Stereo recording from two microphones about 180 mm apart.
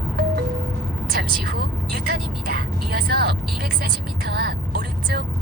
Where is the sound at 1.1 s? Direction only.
55° right (ahead or behind).